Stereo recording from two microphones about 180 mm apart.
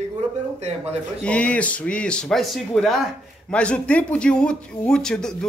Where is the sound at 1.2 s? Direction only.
5° left (ahead or behind).